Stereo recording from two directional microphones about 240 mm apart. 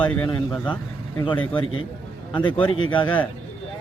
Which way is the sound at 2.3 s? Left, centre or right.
Centre.